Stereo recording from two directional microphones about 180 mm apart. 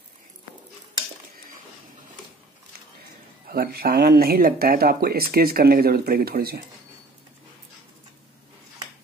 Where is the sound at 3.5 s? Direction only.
60° right (ahead or behind).